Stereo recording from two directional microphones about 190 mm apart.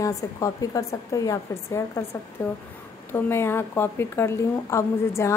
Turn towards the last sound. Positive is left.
turn(degrees=15)  # may be behind; listen again after turning